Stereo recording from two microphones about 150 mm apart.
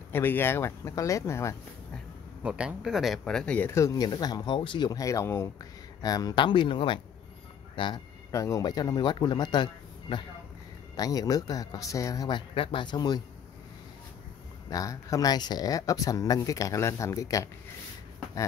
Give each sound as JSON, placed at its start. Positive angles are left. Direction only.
{"t": 0.1, "sound": "speech", "side_deg": 15}
{"t": 2.4, "sound": "speech", "side_deg": -5}
{"t": 8.3, "sound": "speech", "side_deg": 20}
{"t": 14.7, "sound": "speech", "side_deg": 25}